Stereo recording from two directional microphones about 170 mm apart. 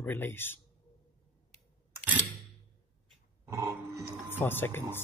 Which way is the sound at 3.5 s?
15° right (ahead or behind).